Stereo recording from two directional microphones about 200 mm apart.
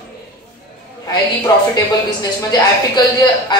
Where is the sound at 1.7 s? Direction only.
20° left (ahead or behind).